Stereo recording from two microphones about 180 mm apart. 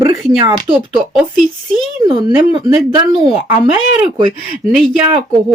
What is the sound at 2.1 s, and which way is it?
Speech, 25° right (ahead or behind).